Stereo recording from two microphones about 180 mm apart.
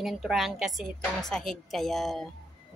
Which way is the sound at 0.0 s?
Centre (ahead or behind).